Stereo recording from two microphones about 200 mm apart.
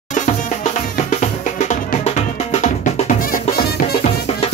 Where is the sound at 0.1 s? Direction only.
40° left (ahead or behind).